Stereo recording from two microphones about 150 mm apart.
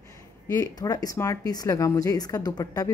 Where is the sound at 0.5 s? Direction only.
25° left (ahead or behind).